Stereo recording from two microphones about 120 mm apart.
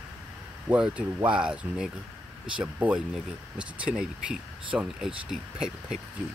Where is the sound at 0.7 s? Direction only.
10° right (ahead or behind).